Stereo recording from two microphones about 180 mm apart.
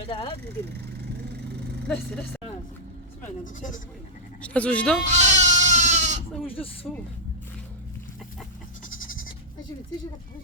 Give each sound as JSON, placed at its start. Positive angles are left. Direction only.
{"t": 0.1, "sound": "speech", "side_deg": 30}
{"t": 3.4, "sound": "speech", "side_deg": 45}
{"t": 4.4, "sound": "speech", "side_deg": 5}
{"t": 5.0, "sound": "goat", "side_deg": -40}
{"t": 9.0, "sound": "goat", "side_deg": 50}